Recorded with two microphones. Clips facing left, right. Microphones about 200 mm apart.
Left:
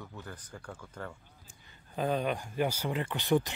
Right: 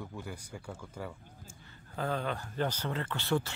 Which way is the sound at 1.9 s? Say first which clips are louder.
Left 3 dB; 15° left (ahead or behind).